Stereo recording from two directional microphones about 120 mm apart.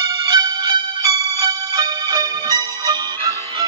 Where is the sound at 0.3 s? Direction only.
35° right (ahead or behind).